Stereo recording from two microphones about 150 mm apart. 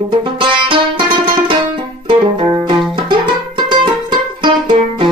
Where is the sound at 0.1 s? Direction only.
30° right (ahead or behind).